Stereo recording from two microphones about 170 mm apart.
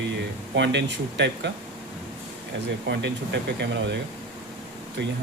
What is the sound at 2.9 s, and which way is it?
Speech, 90° right.